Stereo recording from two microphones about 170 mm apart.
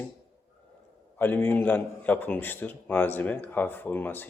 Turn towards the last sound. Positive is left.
turn(degrees=10)  # may be behind; listen again after turning